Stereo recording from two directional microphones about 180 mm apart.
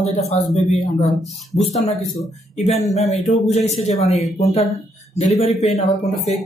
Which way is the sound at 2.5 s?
35° left (ahead or behind).